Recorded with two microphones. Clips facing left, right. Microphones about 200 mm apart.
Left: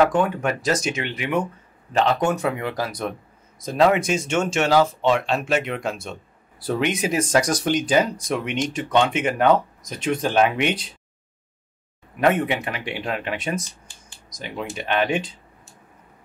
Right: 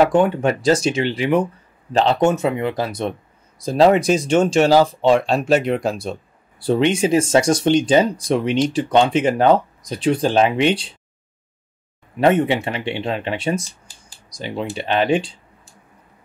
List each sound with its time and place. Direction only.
0.0 s speech: 30° right (ahead or behind)
12.2 s speech: 30° right (ahead or behind)